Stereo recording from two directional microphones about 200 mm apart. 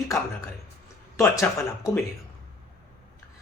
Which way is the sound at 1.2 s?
15° left (ahead or behind).